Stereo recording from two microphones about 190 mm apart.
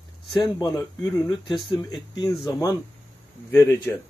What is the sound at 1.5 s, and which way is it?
Speech, centre (ahead or behind).